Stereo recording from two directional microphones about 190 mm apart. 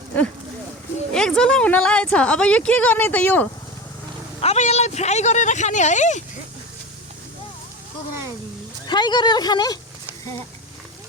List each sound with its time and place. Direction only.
1.1 s speech: 5° left (ahead or behind)
4.4 s speech: 35° left (ahead or behind)
8.9 s speech: 25° left (ahead or behind)